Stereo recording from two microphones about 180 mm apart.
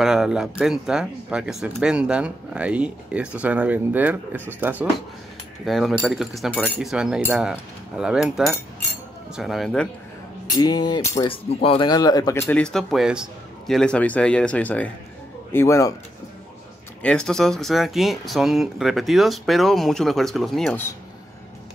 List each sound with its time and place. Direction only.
0.0 s speech: 5° right (ahead or behind)
6.8 s speech: 5° right (ahead or behind)
10.5 s speech: 20° left (ahead or behind)
11.2 s speech: 30° left (ahead or behind); by 15.9 s 15° left (ahead or behind)
17.0 s speech: 5° left (ahead or behind)